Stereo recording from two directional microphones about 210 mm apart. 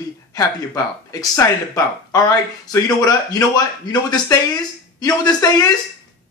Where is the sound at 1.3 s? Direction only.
15° left (ahead or behind).